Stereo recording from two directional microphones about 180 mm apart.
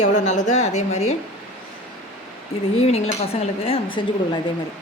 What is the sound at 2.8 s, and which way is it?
A woman's voice, 35° left (ahead or behind).